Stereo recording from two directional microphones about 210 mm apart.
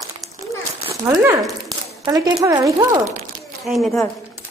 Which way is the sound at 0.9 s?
20° right (ahead or behind).